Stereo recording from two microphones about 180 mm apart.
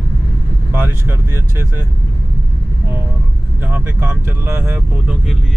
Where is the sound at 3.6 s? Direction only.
10° right (ahead or behind).